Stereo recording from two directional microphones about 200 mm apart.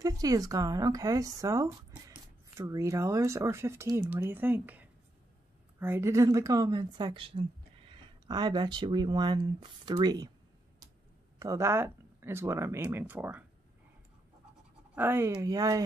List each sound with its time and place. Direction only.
0.0 s a woman's voice: 15° right (ahead or behind)
11.3 s speech: 15° right (ahead or behind)
15.0 s speech: 10° right (ahead or behind)